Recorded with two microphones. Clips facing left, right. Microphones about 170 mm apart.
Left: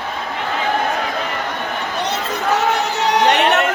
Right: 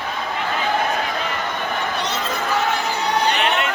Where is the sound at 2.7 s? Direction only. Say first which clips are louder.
Left 4 dB; 85° left.